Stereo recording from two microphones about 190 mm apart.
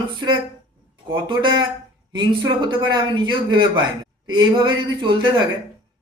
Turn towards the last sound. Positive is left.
turn(degrees=-25)  # may be behind; listen again after turning